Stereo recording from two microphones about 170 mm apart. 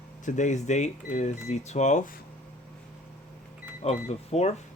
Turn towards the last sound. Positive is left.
turn(degrees=40)  # may be behind; listen again after turning